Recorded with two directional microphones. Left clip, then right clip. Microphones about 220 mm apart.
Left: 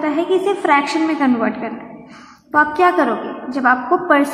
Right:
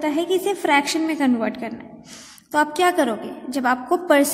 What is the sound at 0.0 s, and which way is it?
A woman's voice, 50° right (ahead or behind).